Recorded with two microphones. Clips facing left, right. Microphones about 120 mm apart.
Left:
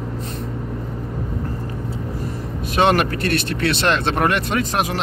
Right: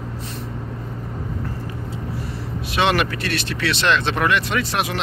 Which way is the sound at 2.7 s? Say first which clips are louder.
Left 3 dB; 45° left (ahead or behind).